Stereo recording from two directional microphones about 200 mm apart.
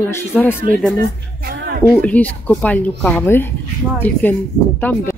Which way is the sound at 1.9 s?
10° left (ahead or behind).